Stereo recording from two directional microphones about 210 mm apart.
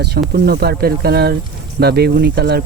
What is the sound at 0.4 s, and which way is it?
Speech, 50° right (ahead or behind).